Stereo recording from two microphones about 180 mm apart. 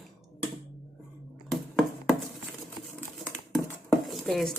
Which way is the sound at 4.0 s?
Centre (ahead or behind).